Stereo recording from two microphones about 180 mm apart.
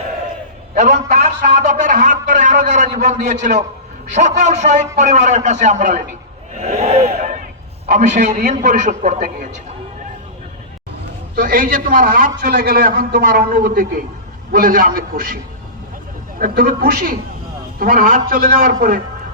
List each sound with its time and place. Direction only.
0.7 s a man's voice: 40° right (ahead or behind)
6.6 s crowd: 35° right (ahead or behind)
7.9 s a man's voice: 40° right (ahead or behind)
11.3 s a man's voice: 50° right (ahead or behind)
16.4 s a man's voice: 55° right (ahead or behind)